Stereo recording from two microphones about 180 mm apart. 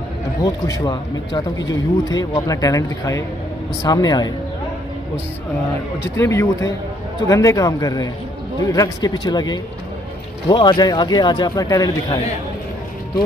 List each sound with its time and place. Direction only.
0.4 s speech: 20° left (ahead or behind)
6.1 s speech: 15° left (ahead or behind)